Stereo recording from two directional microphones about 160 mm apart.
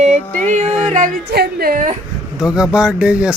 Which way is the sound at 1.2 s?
80° right.